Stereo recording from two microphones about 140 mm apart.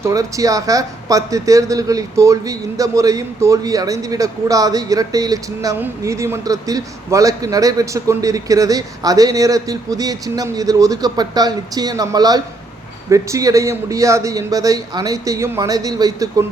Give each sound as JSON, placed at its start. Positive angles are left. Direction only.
{"t": 0.0, "sound": "a man's voice", "side_deg": -25}